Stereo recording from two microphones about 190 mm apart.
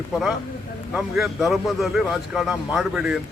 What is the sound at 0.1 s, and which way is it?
A man's voice, centre (ahead or behind).